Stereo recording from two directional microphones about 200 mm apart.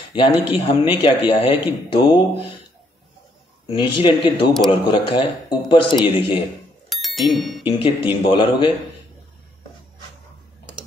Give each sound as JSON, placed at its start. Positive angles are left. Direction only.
{"t": 0.1, "sound": "a man's voice", "side_deg": 25}
{"t": 3.6, "sound": "a man's voice", "side_deg": 25}
{"t": 6.9, "sound": "bicycle bell", "side_deg": 0}
{"t": 7.6, "sound": "a man's voice", "side_deg": 25}